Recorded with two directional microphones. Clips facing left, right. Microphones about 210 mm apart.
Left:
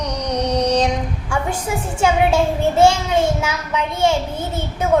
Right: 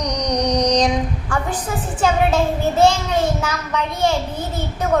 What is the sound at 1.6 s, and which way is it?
A child's voice, 10° left (ahead or behind).